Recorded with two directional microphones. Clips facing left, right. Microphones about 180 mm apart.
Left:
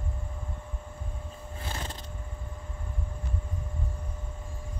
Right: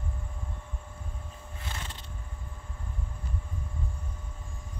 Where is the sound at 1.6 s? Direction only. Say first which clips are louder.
Left 4 dB; 35° left (ahead or behind).